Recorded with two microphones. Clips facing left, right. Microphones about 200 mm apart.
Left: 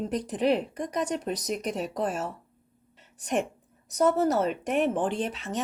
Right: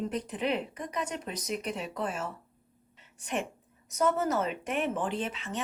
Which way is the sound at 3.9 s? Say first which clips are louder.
Left 4 dB; 35° left (ahead or behind).